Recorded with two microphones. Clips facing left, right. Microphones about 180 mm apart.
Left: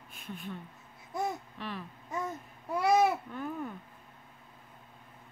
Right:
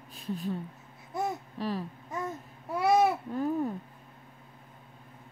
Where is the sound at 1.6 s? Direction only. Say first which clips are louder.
Right 11 dB; 35° right (ahead or behind).